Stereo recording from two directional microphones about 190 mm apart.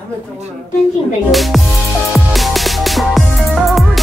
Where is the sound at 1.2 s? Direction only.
Centre (ahead or behind).